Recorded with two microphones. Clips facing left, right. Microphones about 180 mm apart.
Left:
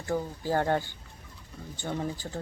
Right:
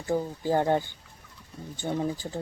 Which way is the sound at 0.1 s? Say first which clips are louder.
Right 3 dB; 15° right (ahead or behind).